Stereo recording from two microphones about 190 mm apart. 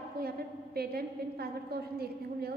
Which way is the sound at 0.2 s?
55° right (ahead or behind).